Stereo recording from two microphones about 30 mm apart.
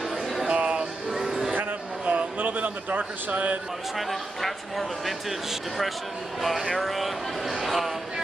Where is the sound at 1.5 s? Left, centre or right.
Right.